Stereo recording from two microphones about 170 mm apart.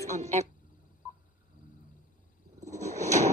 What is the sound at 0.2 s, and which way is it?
Speech, 40° right (ahead or behind).